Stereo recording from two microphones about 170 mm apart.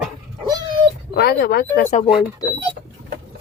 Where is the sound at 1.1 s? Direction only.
70° left (ahead or behind).